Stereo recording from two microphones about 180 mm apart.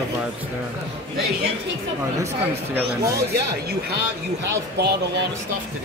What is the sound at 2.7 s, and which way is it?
Speech, 15° right (ahead or behind).